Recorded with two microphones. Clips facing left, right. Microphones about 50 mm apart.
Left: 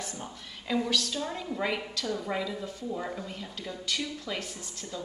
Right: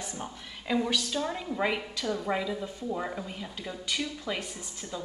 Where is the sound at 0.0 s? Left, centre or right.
Centre.